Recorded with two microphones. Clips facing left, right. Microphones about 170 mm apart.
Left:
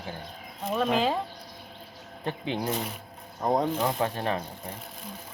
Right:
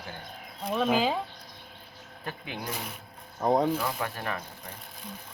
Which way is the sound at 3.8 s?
30° left (ahead or behind).